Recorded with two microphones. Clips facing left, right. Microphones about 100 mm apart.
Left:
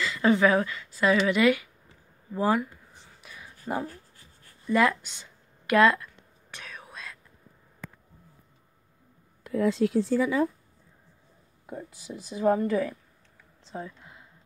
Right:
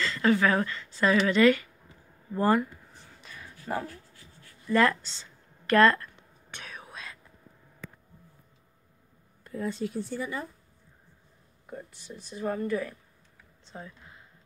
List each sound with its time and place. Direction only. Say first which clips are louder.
0.2 s a woman's voice: left 3 dB; 15° left (ahead or behind)
3.2 s a sound: even; 10° left (ahead or behind)
3.8 s a sound: left 3 dB; 40° left (ahead or behind)
4.6 s a woman's voice: even; 10° left (ahead or behind)
6.5 s whispering: even; centre (ahead or behind)
9.4 s speech: left 8 dB; 90° left
12.3 s speech: left 6 dB; 90° left